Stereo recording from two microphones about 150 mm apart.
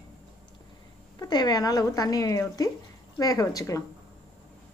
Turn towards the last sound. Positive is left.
turn(degrees=25)  # may be behind; listen again after turning